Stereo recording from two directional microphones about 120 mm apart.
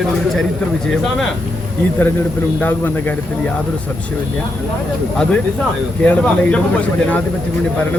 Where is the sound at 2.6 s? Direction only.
15° left (ahead or behind).